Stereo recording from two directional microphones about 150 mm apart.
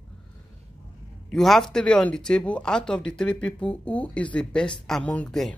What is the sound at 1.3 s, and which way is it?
Speech, centre (ahead or behind).